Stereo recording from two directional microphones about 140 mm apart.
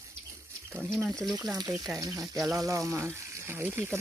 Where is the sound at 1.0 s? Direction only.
5° left (ahead or behind).